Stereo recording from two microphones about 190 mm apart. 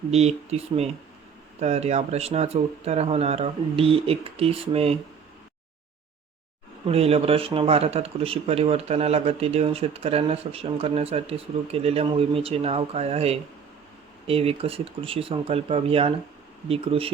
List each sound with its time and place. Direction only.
0.1 s speech: 35° right (ahead or behind)
6.8 s speech: 30° right (ahead or behind)